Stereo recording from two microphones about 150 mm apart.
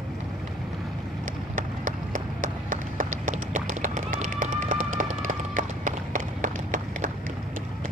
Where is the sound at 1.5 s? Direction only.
60° right (ahead or behind).